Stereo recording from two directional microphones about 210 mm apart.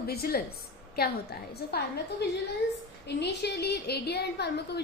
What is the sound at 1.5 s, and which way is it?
A woman's voice, 50° left (ahead or behind).